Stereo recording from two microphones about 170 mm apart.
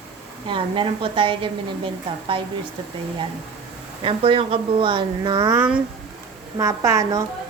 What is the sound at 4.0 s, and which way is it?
Speech, 30° right (ahead or behind).